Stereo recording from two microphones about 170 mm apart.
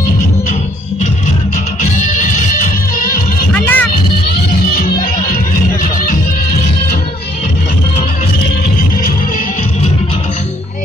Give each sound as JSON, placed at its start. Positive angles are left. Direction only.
{"t": 1.8, "sound": "music", "side_deg": 50}
{"t": 3.5, "sound": "music", "side_deg": 10}